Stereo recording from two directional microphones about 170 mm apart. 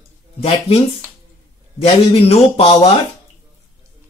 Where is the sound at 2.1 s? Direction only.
35° left (ahead or behind).